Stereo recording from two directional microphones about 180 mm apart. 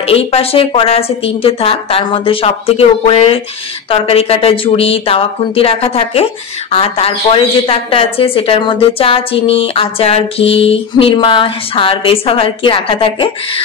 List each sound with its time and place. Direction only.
0.0 s a woman's voice: 35° left (ahead or behind)